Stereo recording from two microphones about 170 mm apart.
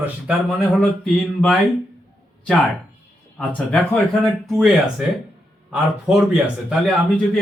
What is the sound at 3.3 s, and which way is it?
Speech, 5° left (ahead or behind).